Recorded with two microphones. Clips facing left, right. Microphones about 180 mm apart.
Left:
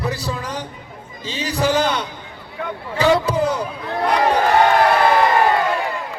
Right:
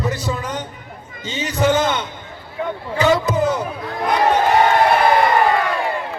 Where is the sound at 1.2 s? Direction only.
30° left (ahead or behind).